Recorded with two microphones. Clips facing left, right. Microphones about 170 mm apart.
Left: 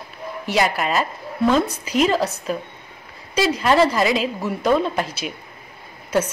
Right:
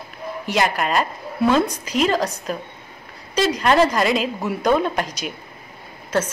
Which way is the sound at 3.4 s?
5° left (ahead or behind).